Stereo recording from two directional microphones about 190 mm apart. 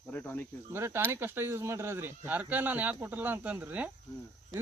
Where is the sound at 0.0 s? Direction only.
10° left (ahead or behind).